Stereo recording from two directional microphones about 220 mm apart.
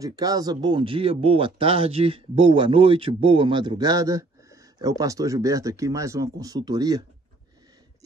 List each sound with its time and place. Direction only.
0.0 s speech: 15° right (ahead or behind)